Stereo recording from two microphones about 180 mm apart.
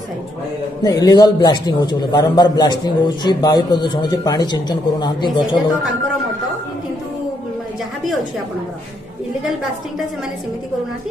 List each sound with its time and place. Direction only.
0.8 s a man's voice: 20° left (ahead or behind)